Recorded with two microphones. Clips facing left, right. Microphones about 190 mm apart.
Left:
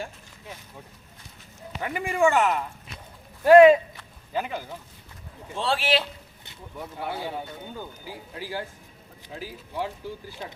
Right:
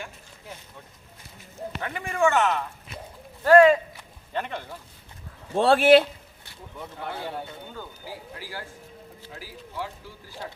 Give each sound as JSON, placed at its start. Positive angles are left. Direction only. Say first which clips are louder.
{"t": 1.8, "sound": "speech", "louder": "left 2 dB", "side_deg": 10}
{"t": 4.3, "sound": "speech", "louder": "left 2 dB", "side_deg": 5}
{"t": 5.5, "sound": "a man's voice", "louder": "right 9 dB", "side_deg": -55}
{"t": 7.0, "sound": "speech", "louder": "left 2 dB", "side_deg": 10}
{"t": 7.8, "sound": "speech", "louder": "even", "side_deg": 20}